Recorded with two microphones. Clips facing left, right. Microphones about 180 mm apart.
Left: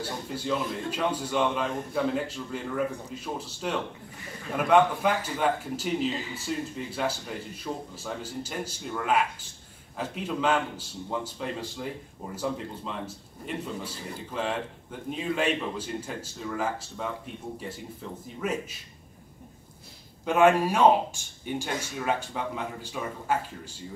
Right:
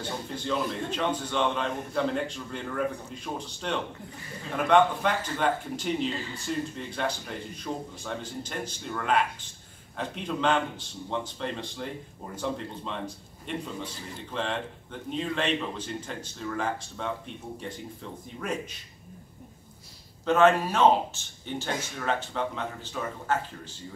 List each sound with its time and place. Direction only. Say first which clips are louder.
0.0 s a man's voice: left 1 dB; 5° left (ahead or behind)
6.1 s a man's voice: even; 15° left (ahead or behind)
18.4 s a man's voice: left 2 dB; 5° left (ahead or behind)
20.2 s a man's voice: even; 10° left (ahead or behind)